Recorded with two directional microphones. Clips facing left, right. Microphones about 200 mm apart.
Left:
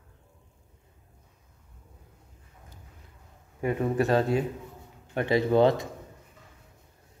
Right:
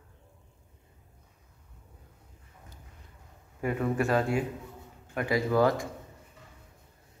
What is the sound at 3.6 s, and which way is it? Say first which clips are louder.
Speech: left 2 dB; 20° left (ahead or behind).